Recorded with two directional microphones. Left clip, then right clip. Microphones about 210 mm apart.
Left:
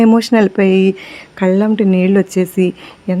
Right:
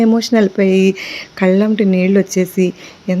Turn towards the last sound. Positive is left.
turn(degrees=10)  # may be behind; listen again after turning